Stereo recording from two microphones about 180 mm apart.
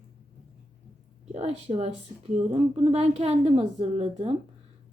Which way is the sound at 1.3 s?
35° right (ahead or behind).